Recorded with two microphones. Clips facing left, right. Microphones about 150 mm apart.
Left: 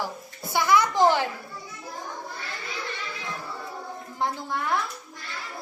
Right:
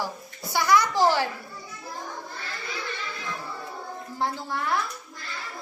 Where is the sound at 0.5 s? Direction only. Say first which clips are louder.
Even; 20° left (ahead or behind).